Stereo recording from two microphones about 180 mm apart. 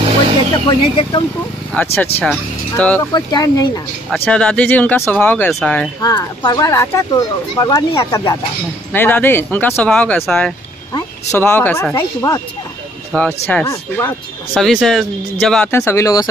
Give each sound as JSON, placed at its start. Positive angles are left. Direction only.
{"t": 0.7, "sound": "speech", "side_deg": 25}
{"t": 1.7, "sound": "speech", "side_deg": 10}
{"t": 3.1, "sound": "speech", "side_deg": 20}
{"t": 4.1, "sound": "speech", "side_deg": 5}
{"t": 5.9, "sound": "speech", "side_deg": 20}
{"t": 14.5, "sound": "speech", "side_deg": 0}